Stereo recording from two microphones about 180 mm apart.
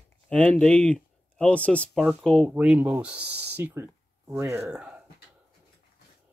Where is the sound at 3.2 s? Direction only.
65° right (ahead or behind).